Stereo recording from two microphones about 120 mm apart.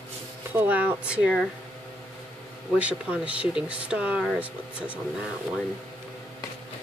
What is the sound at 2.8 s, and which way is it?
Speech, 10° right (ahead or behind).